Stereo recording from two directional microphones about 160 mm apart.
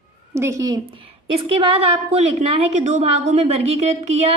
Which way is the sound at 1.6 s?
35° right (ahead or behind).